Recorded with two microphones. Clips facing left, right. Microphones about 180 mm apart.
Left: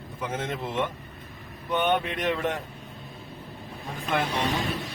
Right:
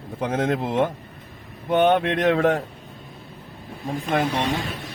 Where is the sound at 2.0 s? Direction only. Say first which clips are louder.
Right 8 dB; 80° right.